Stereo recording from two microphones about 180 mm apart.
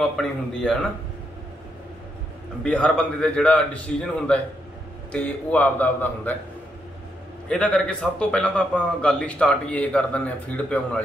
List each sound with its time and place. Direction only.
0.0 s speech: 5° left (ahead or behind)
2.6 s a man's voice: 5° left (ahead or behind)
7.4 s speech: 5° left (ahead or behind)